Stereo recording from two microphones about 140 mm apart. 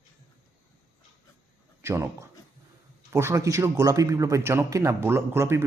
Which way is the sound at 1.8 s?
20° right (ahead or behind).